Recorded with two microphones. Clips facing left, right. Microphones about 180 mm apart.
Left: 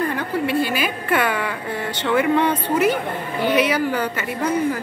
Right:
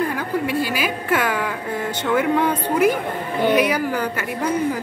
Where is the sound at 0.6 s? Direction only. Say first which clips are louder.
Left 1 dB; 5° right (ahead or behind).